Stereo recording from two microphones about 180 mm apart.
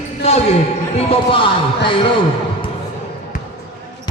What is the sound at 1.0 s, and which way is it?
Speech, 35° left (ahead or behind).